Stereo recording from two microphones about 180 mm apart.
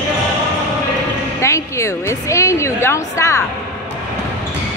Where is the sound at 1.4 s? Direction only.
15° left (ahead or behind).